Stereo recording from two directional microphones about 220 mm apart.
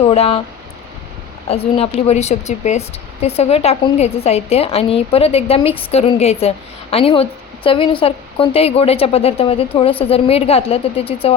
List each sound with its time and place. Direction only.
0.0 s speech: 30° left (ahead or behind)
1.5 s speech: 25° left (ahead or behind)